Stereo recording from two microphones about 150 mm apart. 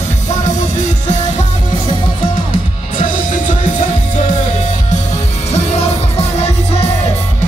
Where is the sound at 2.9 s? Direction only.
60° left (ahead or behind).